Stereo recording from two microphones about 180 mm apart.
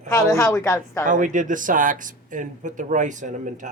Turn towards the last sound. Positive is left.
turn(degrees=-45)  # may be behind; listen again after turning